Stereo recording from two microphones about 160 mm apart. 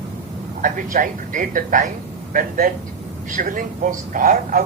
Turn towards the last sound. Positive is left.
turn(degrees=-55)  # may be behind; listen again after turning